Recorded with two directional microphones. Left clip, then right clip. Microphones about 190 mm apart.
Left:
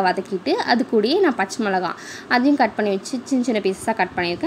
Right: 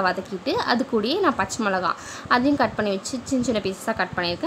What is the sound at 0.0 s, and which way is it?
A woman's voice, 5° left (ahead or behind).